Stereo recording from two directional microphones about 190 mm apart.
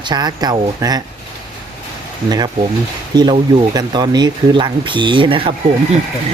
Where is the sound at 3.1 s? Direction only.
25° right (ahead or behind).